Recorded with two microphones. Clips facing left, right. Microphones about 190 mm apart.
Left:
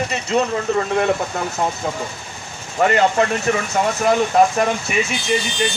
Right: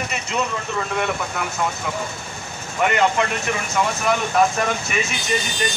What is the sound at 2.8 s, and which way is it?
Speech, 35° left (ahead or behind).